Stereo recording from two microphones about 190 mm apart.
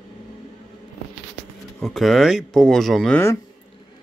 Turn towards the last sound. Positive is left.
turn(degrees=10)  # may be behind; listen again after turning